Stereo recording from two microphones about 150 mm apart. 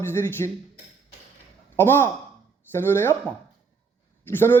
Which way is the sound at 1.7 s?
15° left (ahead or behind).